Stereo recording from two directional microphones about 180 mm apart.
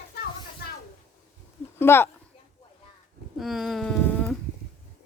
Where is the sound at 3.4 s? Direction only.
Centre (ahead or behind).